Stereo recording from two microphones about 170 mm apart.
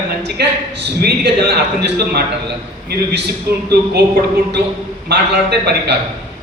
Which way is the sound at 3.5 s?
65° right (ahead or behind).